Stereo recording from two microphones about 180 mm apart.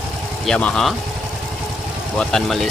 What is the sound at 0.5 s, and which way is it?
Speech, 5° left (ahead or behind).